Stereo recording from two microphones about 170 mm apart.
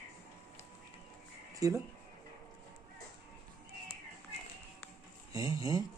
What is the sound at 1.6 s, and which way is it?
Speech, 20° right (ahead or behind).